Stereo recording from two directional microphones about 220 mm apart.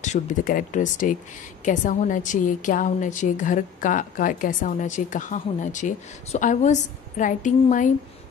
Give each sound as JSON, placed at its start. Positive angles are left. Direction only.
{"t": 0.0, "sound": "a woman's voice", "side_deg": 35}